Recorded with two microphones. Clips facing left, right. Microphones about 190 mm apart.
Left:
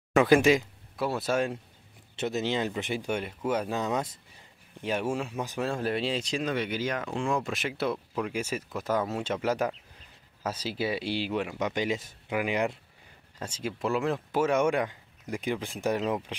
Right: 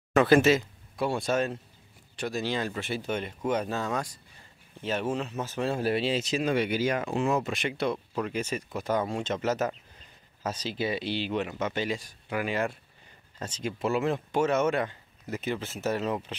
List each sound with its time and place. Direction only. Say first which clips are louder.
0.1 s speech: even; 10° left (ahead or behind)
0.9 s speech: right 1 dB; centre (ahead or behind)
2.1 s speech: left 2 dB; 20° left (ahead or behind)
5.6 s speech: right 2 dB; 5° right (ahead or behind); by 16.3 s 10° left (ahead or behind)